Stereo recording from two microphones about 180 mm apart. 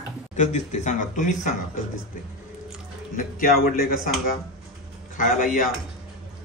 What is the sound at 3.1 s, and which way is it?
A man's voice, 55° left (ahead or behind).